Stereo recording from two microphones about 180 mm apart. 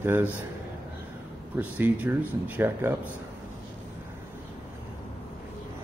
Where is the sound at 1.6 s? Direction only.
10° right (ahead or behind).